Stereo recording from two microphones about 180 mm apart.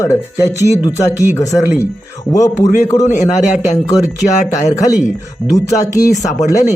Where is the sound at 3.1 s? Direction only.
40° left (ahead or behind).